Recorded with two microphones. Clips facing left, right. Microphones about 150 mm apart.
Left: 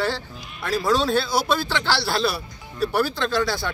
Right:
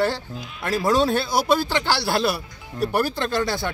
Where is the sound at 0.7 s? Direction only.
20° right (ahead or behind).